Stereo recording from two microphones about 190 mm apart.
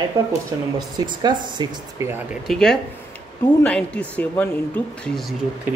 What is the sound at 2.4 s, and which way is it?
Speech, centre (ahead or behind).